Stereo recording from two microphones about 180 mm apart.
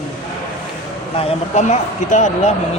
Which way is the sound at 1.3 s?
40° left (ahead or behind).